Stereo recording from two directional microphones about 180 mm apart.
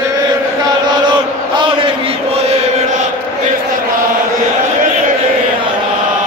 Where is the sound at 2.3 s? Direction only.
35° right (ahead or behind).